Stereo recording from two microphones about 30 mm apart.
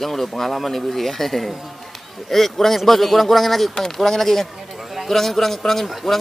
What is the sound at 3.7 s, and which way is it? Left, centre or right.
Speech, centre.